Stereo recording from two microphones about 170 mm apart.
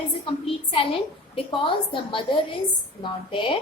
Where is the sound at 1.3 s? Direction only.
30° left (ahead or behind).